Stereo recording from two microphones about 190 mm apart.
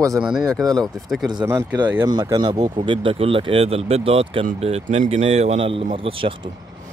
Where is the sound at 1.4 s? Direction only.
10° right (ahead or behind).